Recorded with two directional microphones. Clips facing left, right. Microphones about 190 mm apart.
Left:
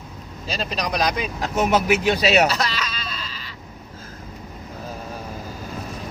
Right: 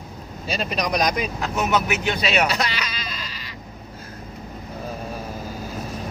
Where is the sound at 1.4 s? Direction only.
35° left (ahead or behind).